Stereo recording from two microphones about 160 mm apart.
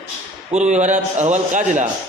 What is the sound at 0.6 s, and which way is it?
A man's voice, 45° right (ahead or behind).